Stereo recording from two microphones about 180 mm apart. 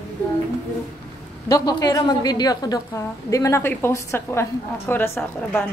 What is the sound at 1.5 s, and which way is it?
A woman's voice, 20° left (ahead or behind).